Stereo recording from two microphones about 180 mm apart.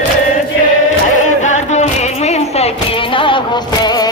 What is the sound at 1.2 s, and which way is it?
Music, 40° left (ahead or behind).